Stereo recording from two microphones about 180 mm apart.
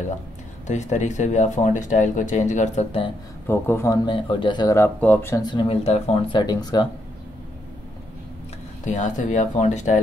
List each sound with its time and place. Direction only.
0.7 s speech: 40° left (ahead or behind)
3.4 s speech: 15° left (ahead or behind)
5.5 s speech: 30° left (ahead or behind)
8.8 s speech: 45° left (ahead or behind)